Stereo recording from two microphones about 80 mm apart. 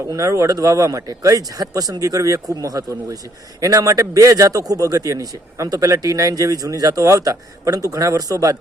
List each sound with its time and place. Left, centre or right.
0.1 s a man's voice: right